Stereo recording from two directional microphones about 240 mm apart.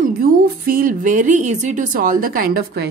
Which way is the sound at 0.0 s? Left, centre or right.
Right.